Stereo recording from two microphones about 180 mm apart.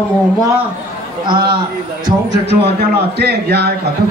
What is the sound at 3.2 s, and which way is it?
Speech, 65° right (ahead or behind).